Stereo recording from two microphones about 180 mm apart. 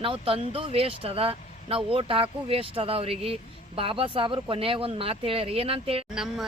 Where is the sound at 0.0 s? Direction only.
30° right (ahead or behind).